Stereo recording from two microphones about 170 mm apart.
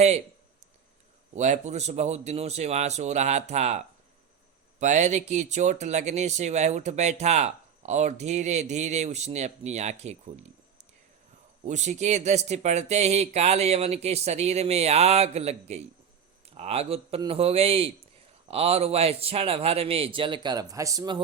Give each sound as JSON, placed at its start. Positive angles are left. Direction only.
{"t": 1.4, "sound": "speech", "side_deg": -45}
{"t": 11.6, "sound": "speech", "side_deg": -45}